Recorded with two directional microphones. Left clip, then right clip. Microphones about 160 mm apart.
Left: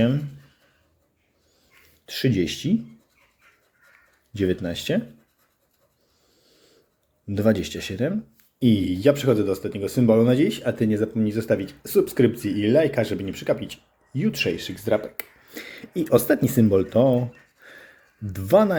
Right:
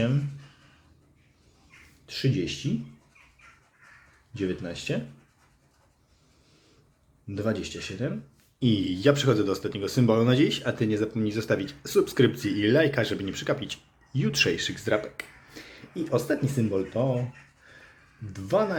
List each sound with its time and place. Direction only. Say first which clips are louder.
2.0 s speech: left 6 dB; 35° left (ahead or behind)
4.4 s speech: left 7 dB; 35° left (ahead or behind)
7.3 s speech: left 8 dB; 35° left (ahead or behind)
15.5 s speech: left 7 dB; 45° left (ahead or behind)
17.6 s a sound: left 7 dB; 50° left (ahead or behind)
18.3 s speech: left 7 dB; 45° left (ahead or behind)